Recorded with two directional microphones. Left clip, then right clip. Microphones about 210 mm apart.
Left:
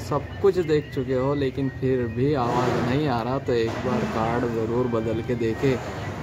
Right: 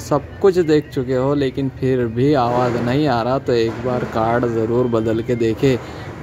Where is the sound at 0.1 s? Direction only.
30° right (ahead or behind).